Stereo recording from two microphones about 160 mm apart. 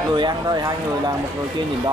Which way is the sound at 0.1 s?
25° right (ahead or behind).